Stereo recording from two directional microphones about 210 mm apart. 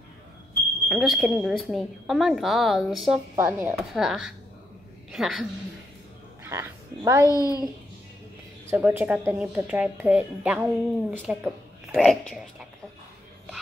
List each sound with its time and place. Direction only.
0.8 s a woman's voice: centre (ahead or behind)
3.3 s a woman's voice: 10° right (ahead or behind)
6.4 s speech: 10° right (ahead or behind)
7.2 s a child's voice: 15° left (ahead or behind)
8.6 s a woman's voice: 10° right (ahead or behind)